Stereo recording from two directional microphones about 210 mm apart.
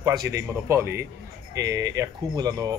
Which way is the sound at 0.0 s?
15° right (ahead or behind).